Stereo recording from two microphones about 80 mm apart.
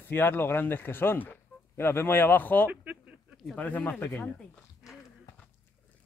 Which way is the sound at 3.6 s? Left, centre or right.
Left.